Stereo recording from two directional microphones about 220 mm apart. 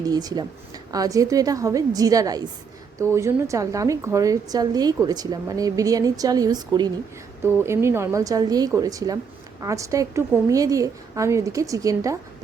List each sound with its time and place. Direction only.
0.0 s a woman's voice: 15° right (ahead or behind)